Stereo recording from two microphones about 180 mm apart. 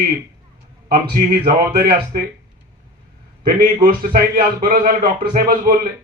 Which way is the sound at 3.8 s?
55° right (ahead or behind).